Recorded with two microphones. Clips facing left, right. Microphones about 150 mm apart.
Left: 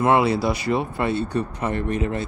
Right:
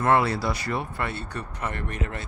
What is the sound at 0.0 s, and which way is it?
Speech, 15° left (ahead or behind).